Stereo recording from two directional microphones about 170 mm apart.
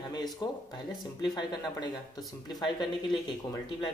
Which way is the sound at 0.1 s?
25° left (ahead or behind).